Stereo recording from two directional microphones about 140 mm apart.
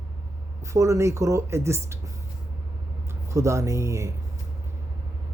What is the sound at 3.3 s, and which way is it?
Speech, 20° right (ahead or behind).